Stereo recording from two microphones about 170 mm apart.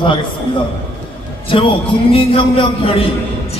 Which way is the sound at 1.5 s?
35° left (ahead or behind).